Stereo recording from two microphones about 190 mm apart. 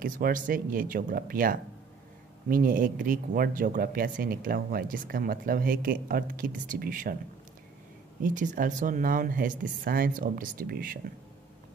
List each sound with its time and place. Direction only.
0.0 s speech: 45° right (ahead or behind)
8.2 s speech: 40° right (ahead or behind)